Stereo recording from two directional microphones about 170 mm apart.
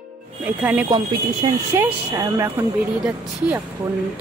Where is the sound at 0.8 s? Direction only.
25° right (ahead or behind).